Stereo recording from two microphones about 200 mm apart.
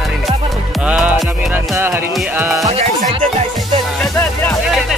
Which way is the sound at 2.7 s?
30° right (ahead or behind).